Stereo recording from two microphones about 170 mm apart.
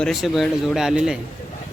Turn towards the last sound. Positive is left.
turn(degrees=-5)  # may be behind; listen again after turning